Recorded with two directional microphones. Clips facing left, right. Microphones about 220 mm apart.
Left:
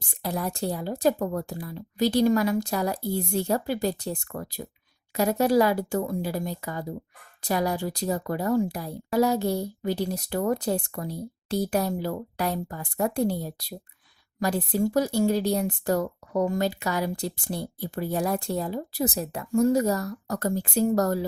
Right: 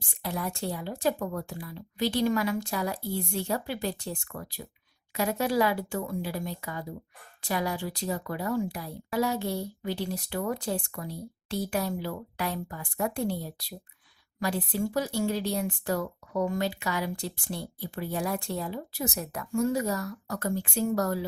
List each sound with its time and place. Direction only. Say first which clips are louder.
0.2 s speech: left 4 dB; 40° left (ahead or behind)